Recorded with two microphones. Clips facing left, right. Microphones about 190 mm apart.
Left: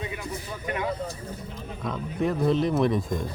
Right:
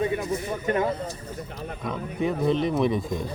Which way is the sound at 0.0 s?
45° right (ahead or behind).